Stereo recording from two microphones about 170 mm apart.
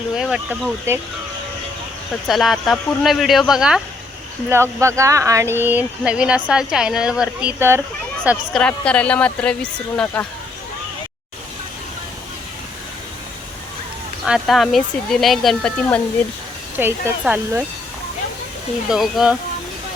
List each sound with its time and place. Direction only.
0.2 s speech: centre (ahead or behind)
2.2 s speech: centre (ahead or behind)
4.4 s speech: 15° right (ahead or behind)
8.5 s speech: 5° left (ahead or behind)
14.3 s speech: centre (ahead or behind)
16.7 s speech: 10° right (ahead or behind)
18.9 s speech: centre (ahead or behind)